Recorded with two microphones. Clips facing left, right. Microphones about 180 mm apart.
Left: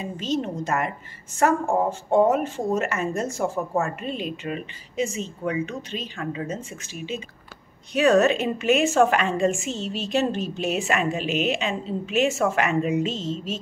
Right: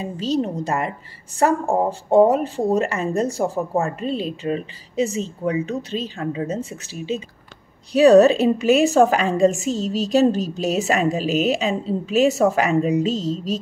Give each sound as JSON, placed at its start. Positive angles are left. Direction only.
{"t": 0.0, "sound": "a woman's voice", "side_deg": -35}